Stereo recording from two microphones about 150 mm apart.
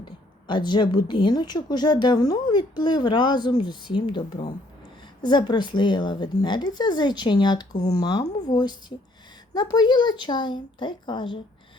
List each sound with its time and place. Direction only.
0.0 s speech: 30° left (ahead or behind)